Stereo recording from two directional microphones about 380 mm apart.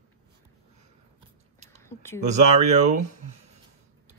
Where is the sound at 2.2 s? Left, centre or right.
Centre.